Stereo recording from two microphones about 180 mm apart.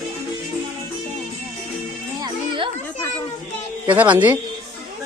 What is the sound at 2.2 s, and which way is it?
Music, 25° right (ahead or behind).